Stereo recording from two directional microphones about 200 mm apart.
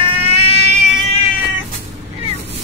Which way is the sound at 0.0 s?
30° right (ahead or behind).